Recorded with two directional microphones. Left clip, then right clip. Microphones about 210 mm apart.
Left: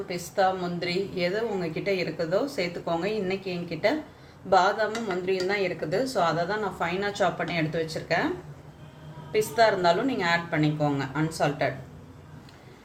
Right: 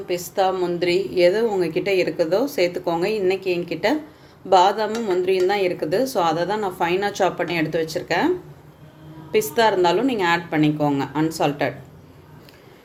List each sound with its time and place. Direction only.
0.1 s a woman's voice: 45° right (ahead or behind)
9.3 s a woman's voice: 45° right (ahead or behind)